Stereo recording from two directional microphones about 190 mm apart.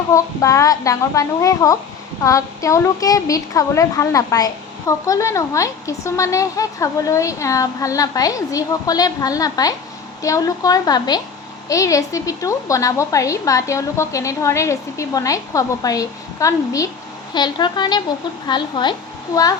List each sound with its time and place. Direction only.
0.1 s a woman's voice: 15° left (ahead or behind)